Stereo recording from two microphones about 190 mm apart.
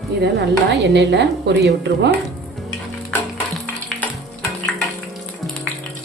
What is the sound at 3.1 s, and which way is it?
Music, 10° left (ahead or behind).